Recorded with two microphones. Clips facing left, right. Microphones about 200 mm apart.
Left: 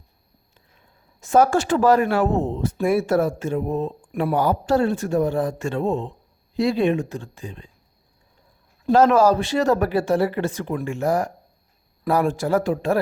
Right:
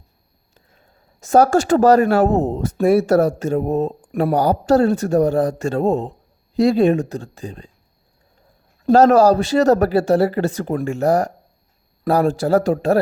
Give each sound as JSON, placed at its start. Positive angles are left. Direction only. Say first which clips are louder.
{"t": 1.2, "sound": "speech", "louder": "right 3 dB", "side_deg": -45}
{"t": 8.9, "sound": "speech", "louder": "right 4 dB", "side_deg": -40}